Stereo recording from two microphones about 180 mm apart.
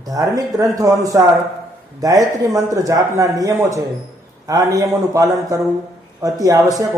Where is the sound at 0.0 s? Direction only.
20° right (ahead or behind).